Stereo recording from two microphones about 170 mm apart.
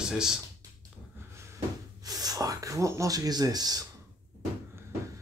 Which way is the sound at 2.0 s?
20° right (ahead or behind).